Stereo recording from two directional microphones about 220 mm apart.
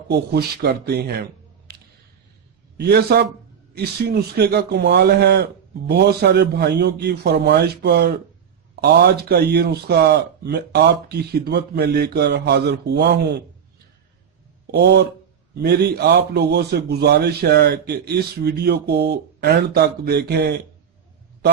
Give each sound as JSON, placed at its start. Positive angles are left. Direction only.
{"t": 0.1, "sound": "a man's voice", "side_deg": -45}
{"t": 2.7, "sound": "a man's voice", "side_deg": -45}
{"t": 14.7, "sound": "a man's voice", "side_deg": -50}